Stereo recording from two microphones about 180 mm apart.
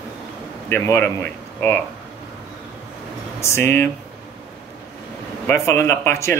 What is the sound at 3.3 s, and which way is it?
Speech, 15° left (ahead or behind).